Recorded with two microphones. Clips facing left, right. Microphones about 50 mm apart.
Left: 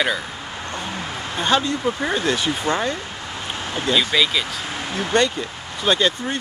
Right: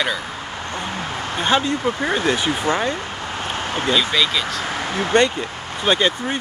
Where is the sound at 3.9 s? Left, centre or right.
Centre.